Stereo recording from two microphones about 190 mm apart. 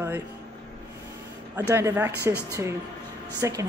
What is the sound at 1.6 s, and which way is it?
Speech, 15° right (ahead or behind).